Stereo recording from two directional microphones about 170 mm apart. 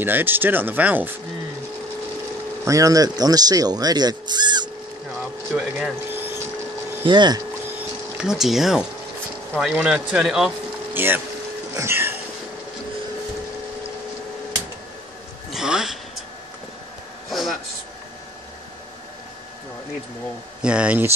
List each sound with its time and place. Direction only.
0.0 s speech: 10° right (ahead or behind)
2.6 s speech: 20° right (ahead or behind)
5.6 s speech: 5° right (ahead or behind)
7.1 s speech: 25° right (ahead or behind)
8.2 s a man's voice: 5° right (ahead or behind)
11.7 s a sound: 15° right (ahead or behind)
15.5 s a sound: 5° right (ahead or behind)
17.3 s a sound: centre (ahead or behind)
20.6 s speech: 5° right (ahead or behind)